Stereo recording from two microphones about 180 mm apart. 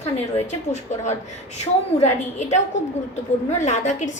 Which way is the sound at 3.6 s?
40° left (ahead or behind).